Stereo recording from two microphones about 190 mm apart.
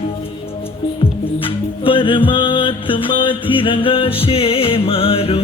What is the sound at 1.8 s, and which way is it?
Music, 25° left (ahead or behind).